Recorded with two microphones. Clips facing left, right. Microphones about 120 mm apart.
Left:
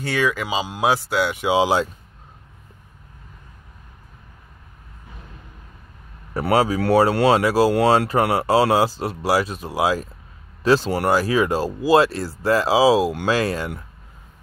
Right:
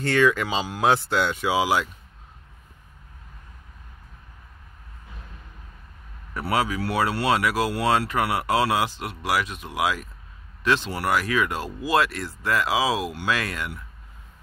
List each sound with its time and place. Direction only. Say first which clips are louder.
0.0 s speech: right 2 dB; 5° left (ahead or behind)
1.3 s speech: left 7 dB; 20° left (ahead or behind)
6.5 s speech: left 8 dB; 35° left (ahead or behind)